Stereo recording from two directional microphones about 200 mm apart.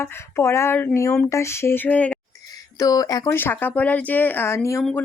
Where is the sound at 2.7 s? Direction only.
15° left (ahead or behind).